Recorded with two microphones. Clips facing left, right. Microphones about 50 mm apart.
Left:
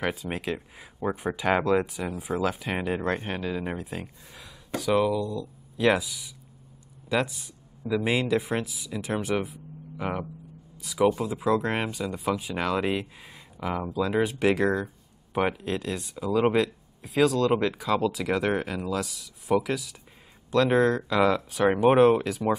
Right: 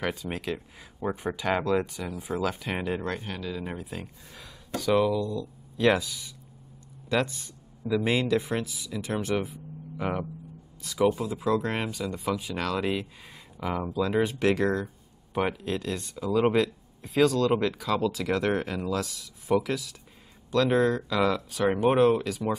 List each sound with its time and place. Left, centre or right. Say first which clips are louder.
0.0 s speech: left 2 dB; centre
3.1 s speech: left 4 dB; left
3.7 s speech: left 2 dB; centre
13.6 s speech: even; centre